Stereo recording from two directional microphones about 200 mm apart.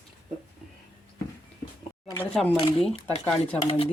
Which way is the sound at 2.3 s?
5° left (ahead or behind).